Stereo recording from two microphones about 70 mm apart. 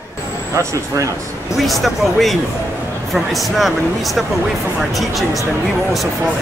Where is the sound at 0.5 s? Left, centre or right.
Right.